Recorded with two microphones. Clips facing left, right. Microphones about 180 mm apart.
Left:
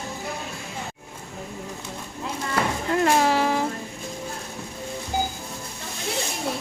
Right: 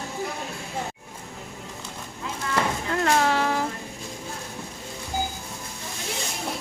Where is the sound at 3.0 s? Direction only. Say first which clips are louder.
Left 2 dB; 10° left (ahead or behind).